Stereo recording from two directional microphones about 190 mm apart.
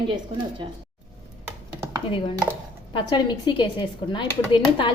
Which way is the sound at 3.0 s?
25° left (ahead or behind).